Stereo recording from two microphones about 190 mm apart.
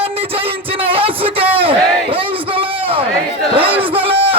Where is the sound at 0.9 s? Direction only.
30° right (ahead or behind).